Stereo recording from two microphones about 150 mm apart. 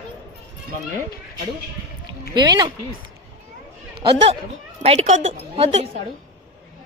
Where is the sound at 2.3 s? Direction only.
30° right (ahead or behind).